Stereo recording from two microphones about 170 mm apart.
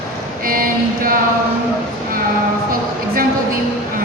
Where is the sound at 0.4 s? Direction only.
55° right (ahead or behind).